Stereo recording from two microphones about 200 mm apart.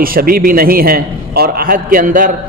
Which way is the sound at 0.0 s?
45° right (ahead or behind).